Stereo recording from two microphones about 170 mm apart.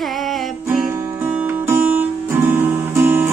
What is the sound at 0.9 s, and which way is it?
Music, 15° right (ahead or behind).